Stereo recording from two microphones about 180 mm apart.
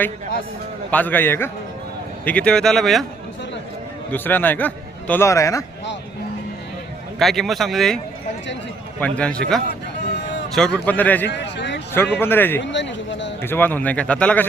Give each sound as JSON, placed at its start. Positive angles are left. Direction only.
{"t": 0.9, "sound": "a man's voice", "side_deg": 10}
{"t": 4.1, "sound": "a man's voice", "side_deg": 10}
{"t": 7.2, "sound": "speech", "side_deg": 0}
{"t": 9.0, "sound": "a man's voice", "side_deg": 5}
{"t": 11.3, "sound": "a sound", "side_deg": 75}
{"t": 12.1, "sound": "a man's voice", "side_deg": 10}
{"t": 12.6, "sound": "speech", "side_deg": 85}
{"t": 13.4, "sound": "a man's voice", "side_deg": 10}